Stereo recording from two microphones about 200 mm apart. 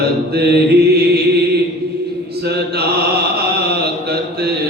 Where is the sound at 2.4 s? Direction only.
55° right (ahead or behind).